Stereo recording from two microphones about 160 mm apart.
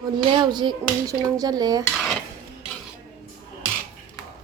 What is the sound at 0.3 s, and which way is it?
Speech, 30° right (ahead or behind).